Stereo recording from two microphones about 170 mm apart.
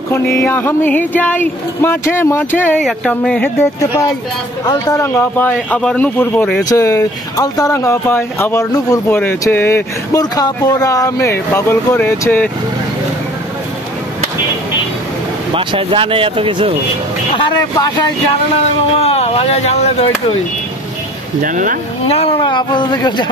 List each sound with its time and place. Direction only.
0.1 s speech: 15° left (ahead or behind)
15.5 s speech: 30° right (ahead or behind)
17.4 s speech: 25° left (ahead or behind)
18.9 s speech: 35° left (ahead or behind)
21.4 s speech: 50° right (ahead or behind)
22.0 s speech: 35° left (ahead or behind)